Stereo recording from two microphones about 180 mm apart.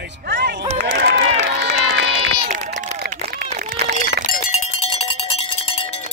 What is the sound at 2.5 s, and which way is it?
Run, 50° right (ahead or behind).